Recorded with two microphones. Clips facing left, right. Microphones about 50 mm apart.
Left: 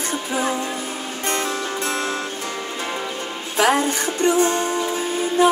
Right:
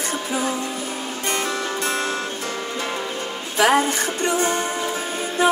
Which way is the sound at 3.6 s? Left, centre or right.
Right.